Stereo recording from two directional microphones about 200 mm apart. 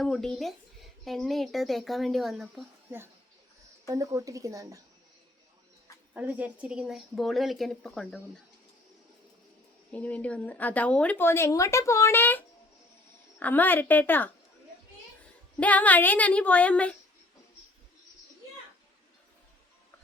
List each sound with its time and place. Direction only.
0.0 s a woman's voice: centre (ahead or behind); by 4.8 s 15° right (ahead or behind)
6.1 s speech: 10° right (ahead or behind)
9.9 s speech: 5° left (ahead or behind)
15.6 s speech: 10° left (ahead or behind)